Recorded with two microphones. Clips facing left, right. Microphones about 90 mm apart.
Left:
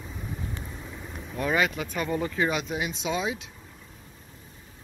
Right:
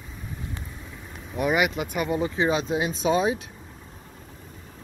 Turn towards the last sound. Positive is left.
turn(degrees=-40)  # may be behind; listen again after turning